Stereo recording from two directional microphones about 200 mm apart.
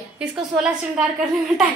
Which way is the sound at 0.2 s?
5° right (ahead or behind).